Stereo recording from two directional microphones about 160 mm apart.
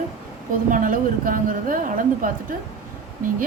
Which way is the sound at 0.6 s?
55° right (ahead or behind).